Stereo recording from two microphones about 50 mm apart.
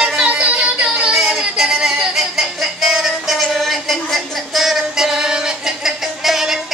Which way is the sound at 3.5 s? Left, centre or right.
Centre.